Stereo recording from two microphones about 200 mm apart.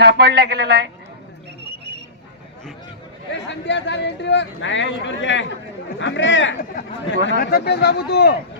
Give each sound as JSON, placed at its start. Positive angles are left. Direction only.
{"t": 0.0, "sound": "speech", "side_deg": -55}
{"t": 3.3, "sound": "speech", "side_deg": 60}
{"t": 7.3, "sound": "speech", "side_deg": 55}